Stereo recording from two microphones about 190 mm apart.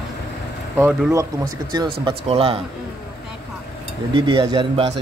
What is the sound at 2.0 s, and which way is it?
Speech, 30° right (ahead or behind).